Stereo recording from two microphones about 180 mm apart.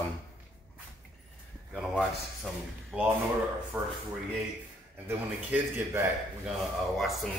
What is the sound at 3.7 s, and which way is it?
Speech, 10° right (ahead or behind).